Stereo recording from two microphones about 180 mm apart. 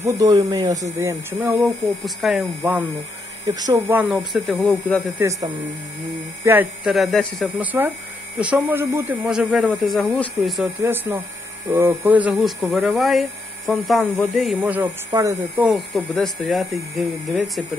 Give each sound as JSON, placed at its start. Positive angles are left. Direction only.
{"t": 0.0, "sound": "speech", "side_deg": -20}
{"t": 3.7, "sound": "speech", "side_deg": -10}
{"t": 6.4, "sound": "speech", "side_deg": -10}
{"t": 10.8, "sound": "speech", "side_deg": -10}
{"t": 15.7, "sound": "speech", "side_deg": 0}